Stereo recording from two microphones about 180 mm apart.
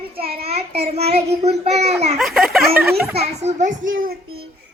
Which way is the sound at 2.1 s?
Centre (ahead or behind).